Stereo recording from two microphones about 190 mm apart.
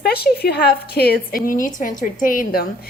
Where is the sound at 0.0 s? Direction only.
55° left (ahead or behind).